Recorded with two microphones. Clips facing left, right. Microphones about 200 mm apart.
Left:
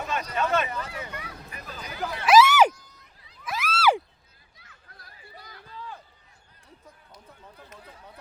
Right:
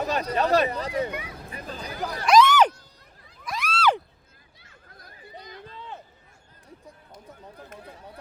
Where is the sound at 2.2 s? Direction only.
5° left (ahead or behind).